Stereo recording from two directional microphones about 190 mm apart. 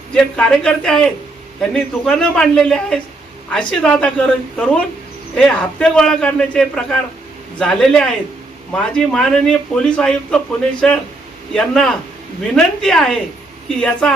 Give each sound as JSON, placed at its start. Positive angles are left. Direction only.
{"t": 0.1, "sound": "a man's voice", "side_deg": 5}